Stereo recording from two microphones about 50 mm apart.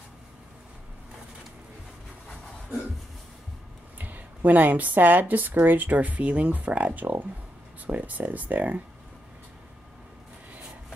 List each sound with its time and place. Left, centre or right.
4.0 s speech: right